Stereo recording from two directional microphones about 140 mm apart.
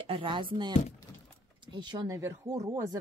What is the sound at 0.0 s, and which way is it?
Speech, 40° right (ahead or behind).